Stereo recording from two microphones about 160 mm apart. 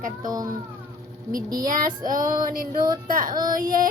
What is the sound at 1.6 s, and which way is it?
A woman's voice, 60° right (ahead or behind).